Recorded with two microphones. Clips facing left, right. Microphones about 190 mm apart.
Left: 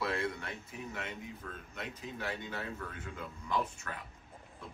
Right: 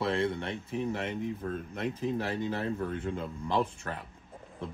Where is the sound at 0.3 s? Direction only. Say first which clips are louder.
Right 8 dB; 25° right (ahead or behind).